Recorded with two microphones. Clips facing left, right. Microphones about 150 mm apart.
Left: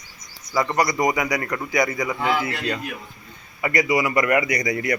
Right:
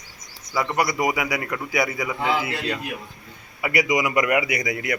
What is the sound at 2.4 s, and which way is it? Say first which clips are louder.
A man's voice: left 1 dB; 10° right (ahead or behind).